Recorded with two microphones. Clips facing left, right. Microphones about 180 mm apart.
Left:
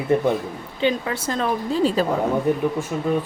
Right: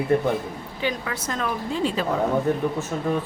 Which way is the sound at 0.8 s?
25° left (ahead or behind).